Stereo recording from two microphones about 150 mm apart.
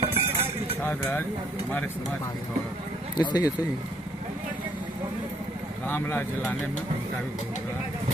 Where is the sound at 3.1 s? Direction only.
30° left (ahead or behind).